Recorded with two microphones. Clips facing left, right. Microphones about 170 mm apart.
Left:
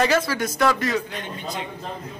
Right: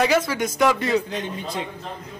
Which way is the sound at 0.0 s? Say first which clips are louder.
Right 1 dB; 15° right (ahead or behind).